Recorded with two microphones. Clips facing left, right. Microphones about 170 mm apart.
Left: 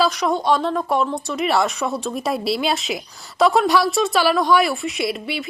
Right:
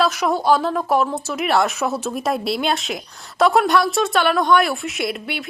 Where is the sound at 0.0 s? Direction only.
Centre (ahead or behind).